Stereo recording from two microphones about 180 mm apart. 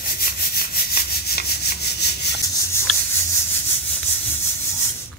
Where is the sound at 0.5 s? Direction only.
55° left (ahead or behind).